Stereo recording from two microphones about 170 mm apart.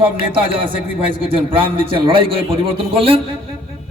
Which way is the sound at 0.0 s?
30° right (ahead or behind).